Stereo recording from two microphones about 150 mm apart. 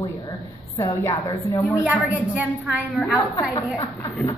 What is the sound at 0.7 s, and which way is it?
A woman's voice, 20° left (ahead or behind).